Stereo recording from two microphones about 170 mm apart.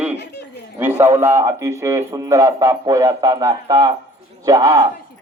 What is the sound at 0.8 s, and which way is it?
A man's voice, 15° right (ahead or behind).